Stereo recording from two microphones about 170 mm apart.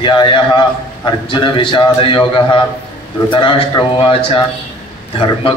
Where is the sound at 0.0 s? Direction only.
30° left (ahead or behind).